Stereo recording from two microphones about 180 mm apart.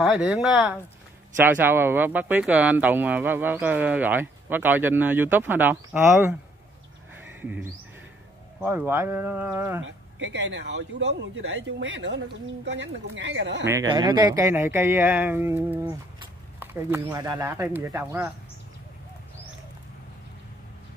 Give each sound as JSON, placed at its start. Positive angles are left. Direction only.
{"t": 0.0, "sound": "speech", "side_deg": 0}
{"t": 7.4, "sound": "speech", "side_deg": -10}
{"t": 9.8, "sound": "speech", "side_deg": -90}
{"t": 13.7, "sound": "speech", "side_deg": -20}